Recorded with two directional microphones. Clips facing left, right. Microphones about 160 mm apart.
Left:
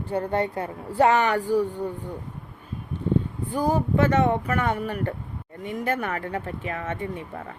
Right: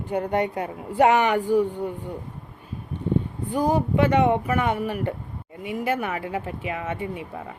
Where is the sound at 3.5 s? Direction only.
15° right (ahead or behind).